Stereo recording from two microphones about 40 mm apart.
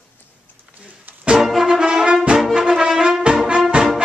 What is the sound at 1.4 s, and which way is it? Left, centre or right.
Brass instrument, centre.